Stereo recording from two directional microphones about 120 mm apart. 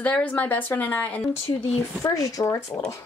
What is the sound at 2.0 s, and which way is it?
Speech, 25° left (ahead or behind).